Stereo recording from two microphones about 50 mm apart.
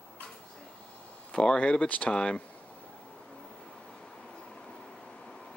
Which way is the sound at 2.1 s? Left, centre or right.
Centre.